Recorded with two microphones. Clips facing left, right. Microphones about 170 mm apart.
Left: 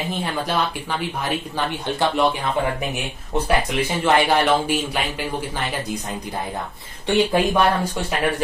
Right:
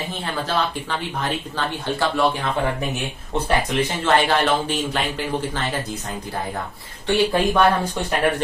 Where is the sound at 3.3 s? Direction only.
5° left (ahead or behind).